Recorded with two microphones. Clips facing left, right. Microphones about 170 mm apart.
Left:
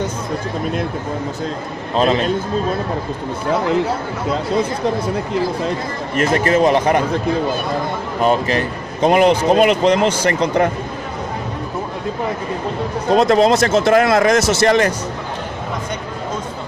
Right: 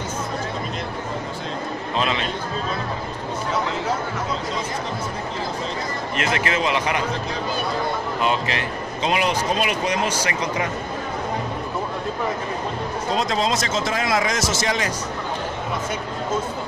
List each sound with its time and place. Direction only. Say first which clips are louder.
2.0 s a man's voice: left 9 dB; 40° left (ahead or behind)
5.7 s speech: left 5 dB; 45° left (ahead or behind)
8.2 s a man's voice: left 9 dB; 45° left (ahead or behind)
13.1 s a man's voice: left 11 dB; 60° left (ahead or behind)